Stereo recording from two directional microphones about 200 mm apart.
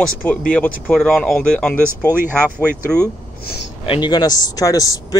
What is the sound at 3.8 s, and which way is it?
Speech, 25° left (ahead or behind).